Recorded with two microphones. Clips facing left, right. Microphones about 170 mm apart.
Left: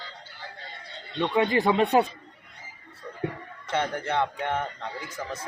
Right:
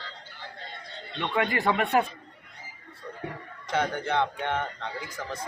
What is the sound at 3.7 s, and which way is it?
A man's voice, centre (ahead or behind).